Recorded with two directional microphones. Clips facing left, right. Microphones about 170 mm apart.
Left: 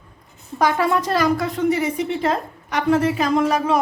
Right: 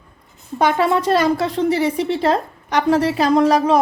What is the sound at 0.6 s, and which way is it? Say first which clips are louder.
A woman's voice: right 2 dB; 25° right (ahead or behind).